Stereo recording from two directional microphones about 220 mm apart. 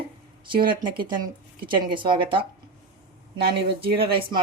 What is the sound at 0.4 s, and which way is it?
A woman's voice, 20° right (ahead or behind).